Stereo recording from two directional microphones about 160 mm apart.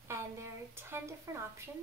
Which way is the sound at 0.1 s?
15° right (ahead or behind).